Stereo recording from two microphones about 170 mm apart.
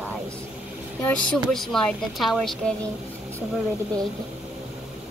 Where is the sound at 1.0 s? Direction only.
5° left (ahead or behind).